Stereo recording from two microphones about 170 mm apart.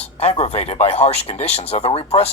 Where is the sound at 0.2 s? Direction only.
40° left (ahead or behind).